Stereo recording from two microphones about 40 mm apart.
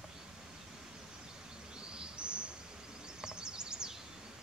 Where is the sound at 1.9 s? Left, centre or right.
Right.